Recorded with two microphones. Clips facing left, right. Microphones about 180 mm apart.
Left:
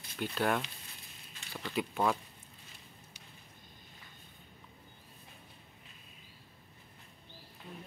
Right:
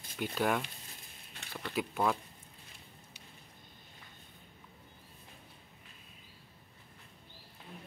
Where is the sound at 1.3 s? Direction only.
65° right (ahead or behind).